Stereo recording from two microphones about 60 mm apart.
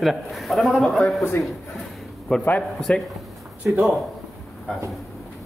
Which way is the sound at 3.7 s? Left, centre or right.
Right.